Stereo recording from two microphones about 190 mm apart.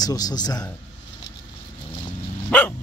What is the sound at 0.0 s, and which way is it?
Speech, 20° left (ahead or behind).